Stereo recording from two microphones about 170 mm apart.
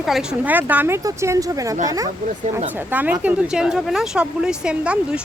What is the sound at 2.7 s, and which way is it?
Speech, 10° right (ahead or behind).